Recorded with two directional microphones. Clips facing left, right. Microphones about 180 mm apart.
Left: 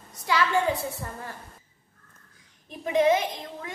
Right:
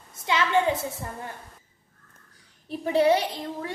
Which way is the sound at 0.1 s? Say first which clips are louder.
Right 1 dB; 25° right (ahead or behind).